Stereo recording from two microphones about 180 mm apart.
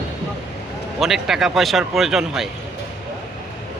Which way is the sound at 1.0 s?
Centre (ahead or behind).